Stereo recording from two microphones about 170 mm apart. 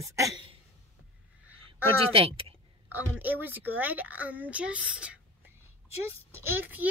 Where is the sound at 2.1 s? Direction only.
35° right (ahead or behind).